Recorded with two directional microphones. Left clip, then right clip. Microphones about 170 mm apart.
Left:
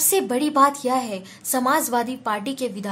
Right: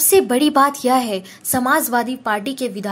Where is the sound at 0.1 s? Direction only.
25° right (ahead or behind).